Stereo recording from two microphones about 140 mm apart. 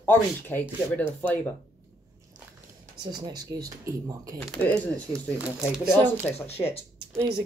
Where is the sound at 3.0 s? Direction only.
30° right (ahead or behind).